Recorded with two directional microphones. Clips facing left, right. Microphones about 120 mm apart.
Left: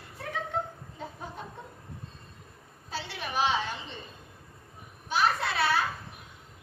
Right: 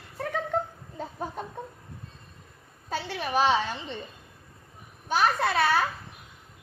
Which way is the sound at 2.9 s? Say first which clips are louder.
Right 6 dB; 45° right (ahead or behind).